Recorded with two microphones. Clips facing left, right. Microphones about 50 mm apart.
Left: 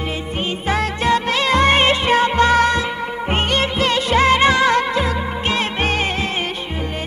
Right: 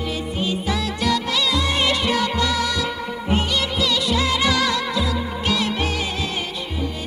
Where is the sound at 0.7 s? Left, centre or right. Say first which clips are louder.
Left 7 dB; left.